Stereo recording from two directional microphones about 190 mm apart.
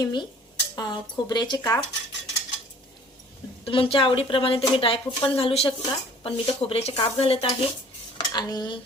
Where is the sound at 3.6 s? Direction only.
30° left (ahead or behind).